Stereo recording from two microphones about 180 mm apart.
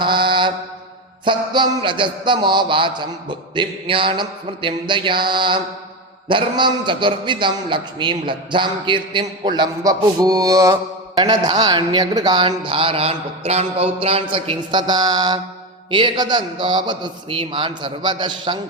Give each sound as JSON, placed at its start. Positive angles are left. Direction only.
{"t": 0.0, "sound": "mantra", "side_deg": -25}
{"t": 1.2, "sound": "a man's voice", "side_deg": -25}